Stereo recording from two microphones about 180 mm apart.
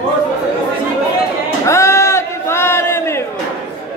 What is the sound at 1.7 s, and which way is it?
Crowd, 15° left (ahead or behind).